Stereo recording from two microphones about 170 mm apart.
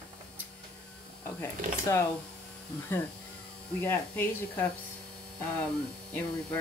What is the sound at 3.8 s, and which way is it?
Speech, 10° left (ahead or behind).